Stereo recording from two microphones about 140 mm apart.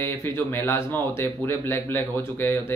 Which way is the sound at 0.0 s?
15° left (ahead or behind).